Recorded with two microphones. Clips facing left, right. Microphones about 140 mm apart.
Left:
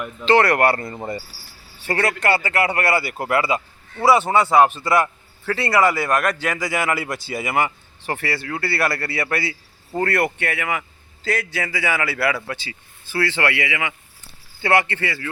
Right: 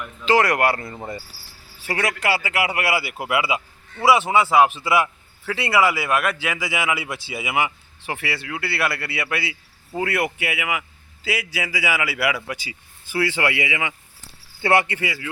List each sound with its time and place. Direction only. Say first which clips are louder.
0.3 s a man's voice: left 2 dB; 10° right (ahead or behind)
0.9 s speech: left 3 dB; 10° left (ahead or behind)
1.8 s a man's voice: left 3 dB; 10° right (ahead or behind)
14.9 s a man's voice: left 1 dB; 10° right (ahead or behind)